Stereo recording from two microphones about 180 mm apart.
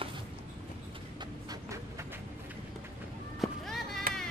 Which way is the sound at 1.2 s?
20° right (ahead or behind).